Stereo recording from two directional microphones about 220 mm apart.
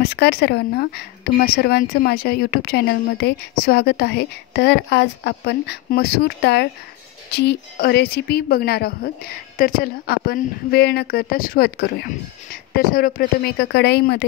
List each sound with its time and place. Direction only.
0.0 s speech: 45° left (ahead or behind)